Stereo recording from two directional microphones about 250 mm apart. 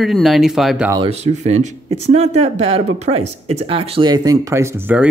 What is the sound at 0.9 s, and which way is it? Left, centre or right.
Speech, right.